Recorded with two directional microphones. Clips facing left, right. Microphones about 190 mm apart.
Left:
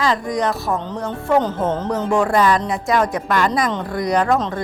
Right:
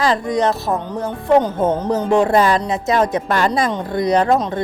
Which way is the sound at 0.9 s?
15° right (ahead or behind).